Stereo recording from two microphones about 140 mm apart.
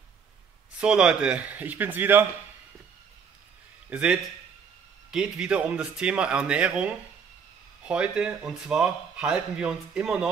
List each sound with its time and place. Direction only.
0.7 s speech: 5° right (ahead or behind)
3.9 s speech: 5° right (ahead or behind)